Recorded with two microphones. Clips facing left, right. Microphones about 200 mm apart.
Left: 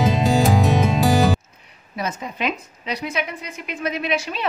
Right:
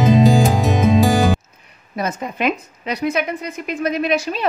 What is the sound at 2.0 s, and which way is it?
Speech, 50° right (ahead or behind).